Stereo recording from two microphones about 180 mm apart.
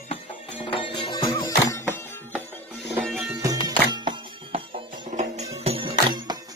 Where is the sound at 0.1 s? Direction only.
30° left (ahead or behind).